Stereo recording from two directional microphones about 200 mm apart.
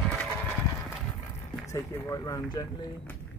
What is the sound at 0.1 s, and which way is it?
Clip-clop, 5° left (ahead or behind).